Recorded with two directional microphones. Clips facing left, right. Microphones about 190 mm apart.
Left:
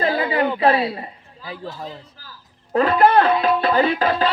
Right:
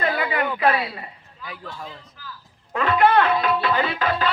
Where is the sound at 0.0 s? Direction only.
30° left (ahead or behind).